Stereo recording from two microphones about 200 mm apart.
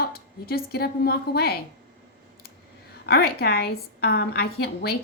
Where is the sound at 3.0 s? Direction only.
50° left (ahead or behind).